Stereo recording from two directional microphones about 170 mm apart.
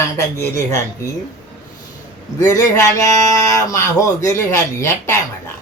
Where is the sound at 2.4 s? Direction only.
20° left (ahead or behind).